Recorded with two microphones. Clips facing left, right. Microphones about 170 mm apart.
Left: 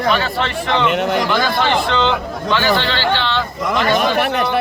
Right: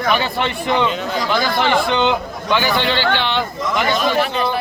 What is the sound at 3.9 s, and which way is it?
Speech, 65° left (ahead or behind).